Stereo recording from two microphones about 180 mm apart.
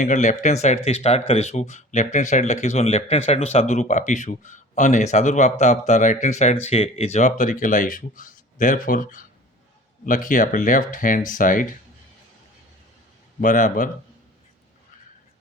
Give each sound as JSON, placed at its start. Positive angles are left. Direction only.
{"t": 0.0, "sound": "speech", "side_deg": 45}
{"t": 13.4, "sound": "speech", "side_deg": 45}